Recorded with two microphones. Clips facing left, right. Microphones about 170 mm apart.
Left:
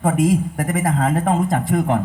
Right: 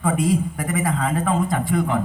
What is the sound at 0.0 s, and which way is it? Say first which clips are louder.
A man's voice: left 3 dB; 45° left (ahead or behind).